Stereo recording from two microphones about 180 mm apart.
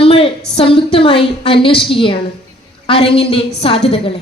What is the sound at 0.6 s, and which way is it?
A woman's voice, 30° left (ahead or behind).